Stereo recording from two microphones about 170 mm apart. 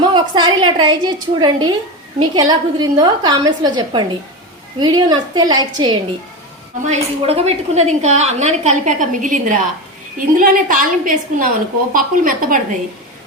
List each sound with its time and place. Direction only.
0.0 s a woman's voice: 25° right (ahead or behind)
6.8 s a woman's voice: 40° right (ahead or behind)